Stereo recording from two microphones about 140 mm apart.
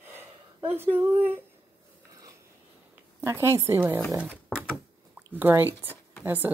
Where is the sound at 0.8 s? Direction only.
15° right (ahead or behind).